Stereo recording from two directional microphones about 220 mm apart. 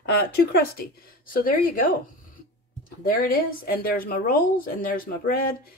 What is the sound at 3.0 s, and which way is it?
Speech, 40° left (ahead or behind).